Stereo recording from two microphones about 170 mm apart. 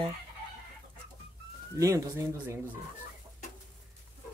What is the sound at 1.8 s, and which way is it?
Speech, 20° right (ahead or behind).